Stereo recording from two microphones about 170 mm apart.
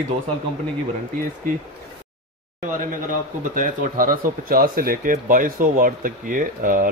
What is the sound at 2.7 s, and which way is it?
Speech, 50° right (ahead or behind).